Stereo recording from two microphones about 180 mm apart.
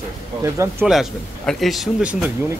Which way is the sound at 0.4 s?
15° right (ahead or behind).